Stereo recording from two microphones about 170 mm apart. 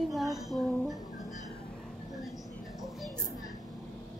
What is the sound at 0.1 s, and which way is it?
Child singing, centre (ahead or behind).